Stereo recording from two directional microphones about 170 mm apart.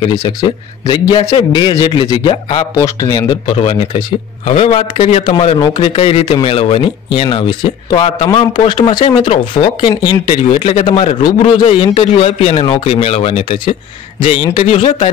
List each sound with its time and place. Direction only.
0.2 s a man's voice: 25° left (ahead or behind); by 15.0 s 40° left (ahead or behind)